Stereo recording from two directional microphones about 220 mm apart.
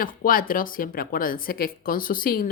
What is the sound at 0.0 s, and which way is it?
Speech, 40° left (ahead or behind).